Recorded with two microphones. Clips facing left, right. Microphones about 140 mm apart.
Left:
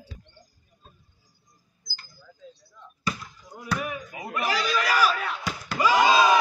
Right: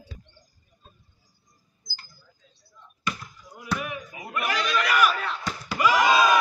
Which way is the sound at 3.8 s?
35° left (ahead or behind).